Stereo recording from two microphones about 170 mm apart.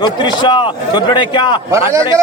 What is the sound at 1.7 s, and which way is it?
Speech, 20° right (ahead or behind).